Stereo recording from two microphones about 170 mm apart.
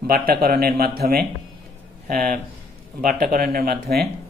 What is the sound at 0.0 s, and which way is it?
A man's voice, 60° right (ahead or behind).